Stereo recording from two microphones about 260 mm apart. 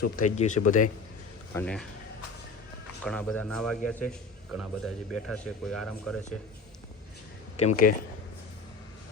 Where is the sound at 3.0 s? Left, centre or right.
Centre.